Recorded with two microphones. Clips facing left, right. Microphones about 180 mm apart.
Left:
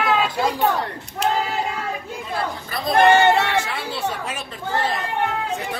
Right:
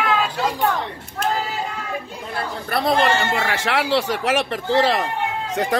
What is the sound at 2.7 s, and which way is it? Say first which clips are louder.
Speech: left 2 dB; 75° right (ahead or behind).